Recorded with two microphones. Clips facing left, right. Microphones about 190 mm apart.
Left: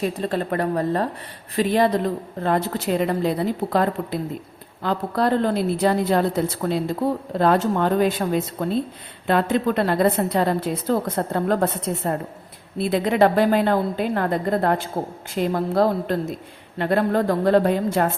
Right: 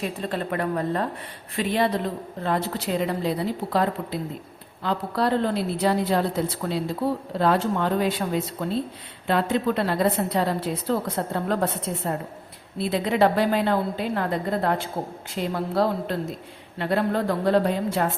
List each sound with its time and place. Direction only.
0.0 s a woman's voice: 40° left (ahead or behind)
9.2 s a woman's voice: 50° left (ahead or behind)